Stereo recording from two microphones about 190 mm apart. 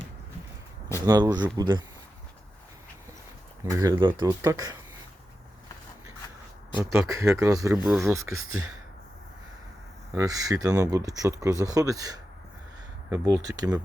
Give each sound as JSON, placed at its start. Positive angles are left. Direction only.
{"t": 1.0, "sound": "speech", "side_deg": -20}
{"t": 3.7, "sound": "speech", "side_deg": -15}
{"t": 6.7, "sound": "speech", "side_deg": -15}
{"t": 8.4, "sound": "speech", "side_deg": -90}
{"t": 10.2, "sound": "speech", "side_deg": -20}